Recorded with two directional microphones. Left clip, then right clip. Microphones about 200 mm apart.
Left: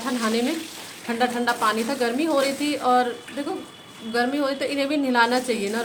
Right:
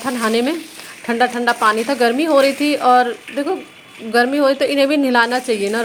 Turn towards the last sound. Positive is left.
turn(degrees=-35)  # may be behind; listen again after turning